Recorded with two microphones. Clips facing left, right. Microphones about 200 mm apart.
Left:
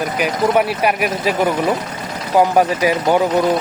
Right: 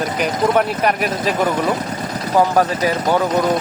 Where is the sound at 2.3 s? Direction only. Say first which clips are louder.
Left 2 dB; 15° left (ahead or behind).